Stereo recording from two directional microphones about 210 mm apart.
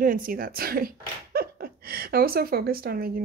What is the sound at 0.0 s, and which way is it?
Speech, 40° right (ahead or behind).